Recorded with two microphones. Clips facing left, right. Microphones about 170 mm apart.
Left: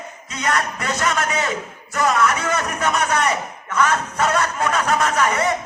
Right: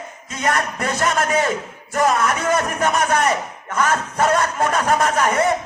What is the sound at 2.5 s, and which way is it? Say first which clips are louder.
Speech: right 3 dB; 50° right (ahead or behind).